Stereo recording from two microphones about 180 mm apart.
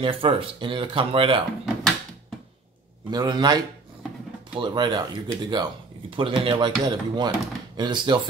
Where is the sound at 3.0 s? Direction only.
25° right (ahead or behind).